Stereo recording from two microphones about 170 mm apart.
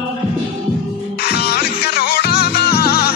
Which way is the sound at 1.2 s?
70° left (ahead or behind).